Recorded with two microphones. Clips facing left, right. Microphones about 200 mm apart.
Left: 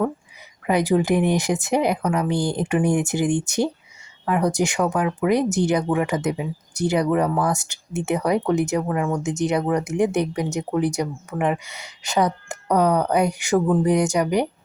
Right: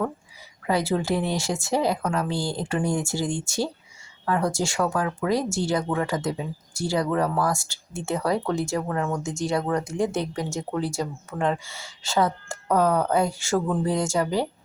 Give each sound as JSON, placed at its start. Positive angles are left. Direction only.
{"t": 0.7, "sound": "speech", "side_deg": 15}
{"t": 9.2, "sound": "speech", "side_deg": 20}